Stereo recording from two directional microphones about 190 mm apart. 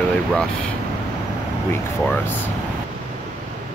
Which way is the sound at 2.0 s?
10° left (ahead or behind).